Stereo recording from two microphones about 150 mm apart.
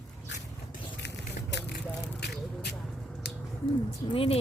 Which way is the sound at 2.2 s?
90° left.